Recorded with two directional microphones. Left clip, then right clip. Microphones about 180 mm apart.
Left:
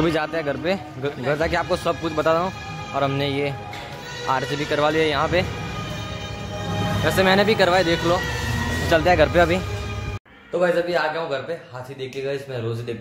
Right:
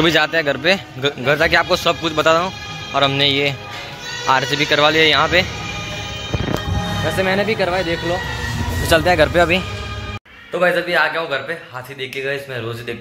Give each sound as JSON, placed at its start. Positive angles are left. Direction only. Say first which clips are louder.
{"t": 0.0, "sound": "a man's voice", "louder": "right 7 dB", "side_deg": 0}
{"t": 7.1, "sound": "speech", "louder": "left 1 dB", "side_deg": 10}
{"t": 8.8, "sound": "a man's voice", "louder": "right 3 dB", "side_deg": -10}
{"t": 10.6, "sound": "a man's voice", "louder": "right 5 dB", "side_deg": 0}